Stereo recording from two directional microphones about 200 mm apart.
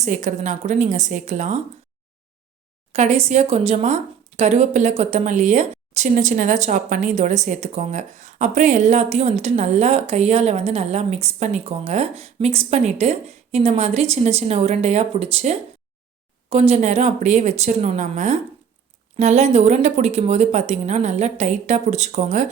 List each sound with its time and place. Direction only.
0.0 s a woman's voice: 40° right (ahead or behind)
2.9 s a woman's voice: 35° right (ahead or behind)